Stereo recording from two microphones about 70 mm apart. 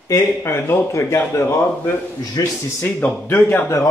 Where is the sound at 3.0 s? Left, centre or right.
Left.